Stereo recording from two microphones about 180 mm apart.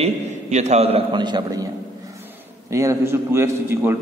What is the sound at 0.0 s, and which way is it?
A man's voice, 40° right (ahead or behind).